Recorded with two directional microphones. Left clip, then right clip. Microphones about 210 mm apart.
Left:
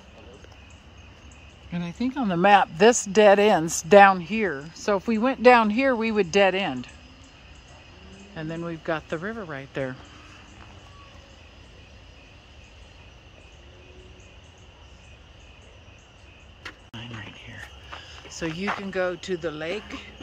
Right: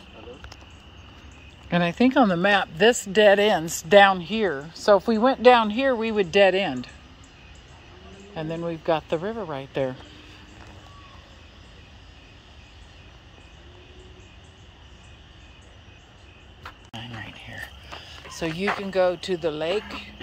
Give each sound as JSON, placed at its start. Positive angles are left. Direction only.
{"t": 2.0, "sound": "speech", "side_deg": 0}
{"t": 2.2, "sound": "speech", "side_deg": 15}
{"t": 5.4, "sound": "speech", "side_deg": 30}
{"t": 6.5, "sound": "speech", "side_deg": 10}
{"t": 8.4, "sound": "speech", "side_deg": 10}
{"t": 16.9, "sound": "a sound", "side_deg": 10}
{"t": 18.9, "sound": "speech", "side_deg": 10}